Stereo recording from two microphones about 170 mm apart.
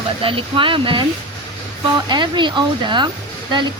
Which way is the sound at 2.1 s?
30° right (ahead or behind).